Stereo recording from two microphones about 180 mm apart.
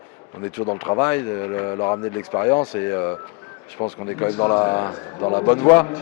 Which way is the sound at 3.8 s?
35° left (ahead or behind).